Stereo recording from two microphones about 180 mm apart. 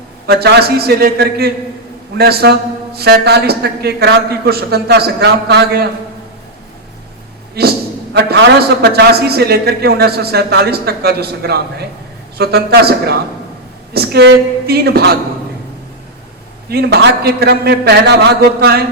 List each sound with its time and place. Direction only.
0.3 s a man's voice: 65° right (ahead or behind)
7.6 s a man's voice: 65° right (ahead or behind)
16.6 s a man's voice: 60° right (ahead or behind)